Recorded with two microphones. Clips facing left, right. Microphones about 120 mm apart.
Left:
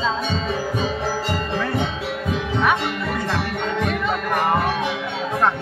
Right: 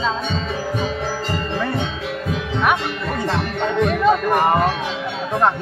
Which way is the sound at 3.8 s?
15° right (ahead or behind).